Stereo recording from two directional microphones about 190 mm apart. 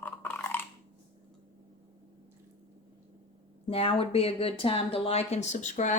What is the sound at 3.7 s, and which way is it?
Speech, 30° left (ahead or behind).